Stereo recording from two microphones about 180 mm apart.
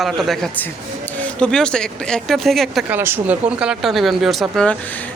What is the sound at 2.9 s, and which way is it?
Speech, 10° right (ahead or behind).